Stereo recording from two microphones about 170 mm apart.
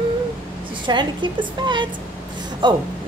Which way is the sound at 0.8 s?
25° right (ahead or behind).